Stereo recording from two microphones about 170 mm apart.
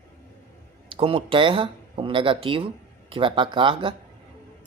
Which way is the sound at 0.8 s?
30° right (ahead or behind).